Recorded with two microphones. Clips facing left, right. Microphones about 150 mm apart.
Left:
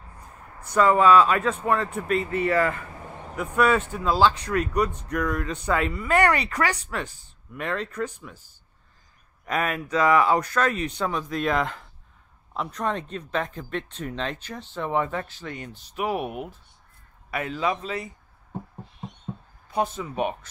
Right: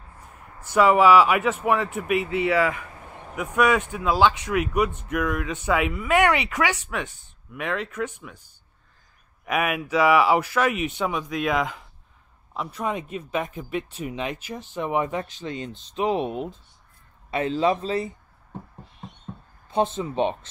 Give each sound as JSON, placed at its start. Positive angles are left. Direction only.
{"t": 0.7, "sound": "speech", "side_deg": -10}
{"t": 9.5, "sound": "speech", "side_deg": -10}
{"t": 19.7, "sound": "speech", "side_deg": -25}